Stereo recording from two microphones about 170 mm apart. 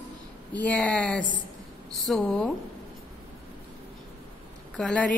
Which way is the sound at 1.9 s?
5° left (ahead or behind).